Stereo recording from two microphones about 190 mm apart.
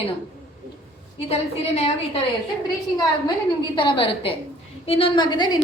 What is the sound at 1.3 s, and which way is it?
Speech, 35° left (ahead or behind).